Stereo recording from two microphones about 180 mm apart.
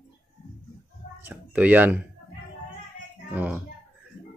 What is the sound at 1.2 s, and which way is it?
Speech, 10° right (ahead or behind).